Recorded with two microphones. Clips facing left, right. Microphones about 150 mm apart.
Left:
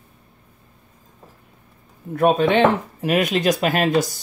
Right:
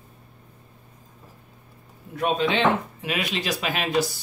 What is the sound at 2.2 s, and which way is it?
Speech, 55° left (ahead or behind).